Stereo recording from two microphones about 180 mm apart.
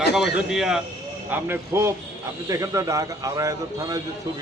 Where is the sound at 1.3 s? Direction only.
15° right (ahead or behind).